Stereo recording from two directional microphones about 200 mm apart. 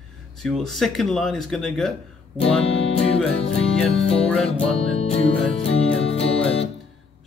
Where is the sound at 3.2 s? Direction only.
30° left (ahead or behind).